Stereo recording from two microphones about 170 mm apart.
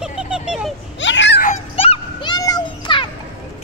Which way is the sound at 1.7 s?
35° left (ahead or behind).